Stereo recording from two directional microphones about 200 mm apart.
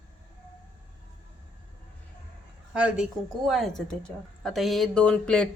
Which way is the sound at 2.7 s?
5° right (ahead or behind).